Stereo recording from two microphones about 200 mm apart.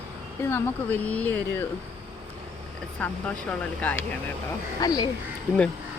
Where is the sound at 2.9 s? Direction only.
5° left (ahead or behind).